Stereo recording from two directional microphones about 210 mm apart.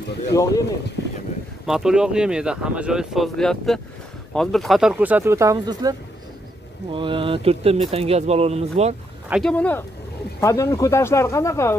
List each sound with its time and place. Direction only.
0.3 s speech: 15° left (ahead or behind)
1.7 s speech: centre (ahead or behind); by 8.9 s 30° right (ahead or behind)
9.3 s speech: 5° left (ahead or behind)